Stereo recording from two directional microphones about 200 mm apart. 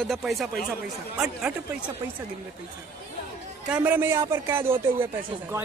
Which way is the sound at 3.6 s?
5° right (ahead or behind).